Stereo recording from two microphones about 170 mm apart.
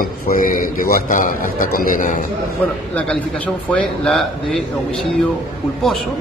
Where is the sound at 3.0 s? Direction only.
5° left (ahead or behind).